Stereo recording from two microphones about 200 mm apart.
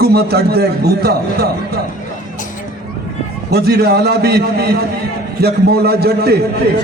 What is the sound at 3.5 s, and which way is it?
A man's voice, 50° right (ahead or behind).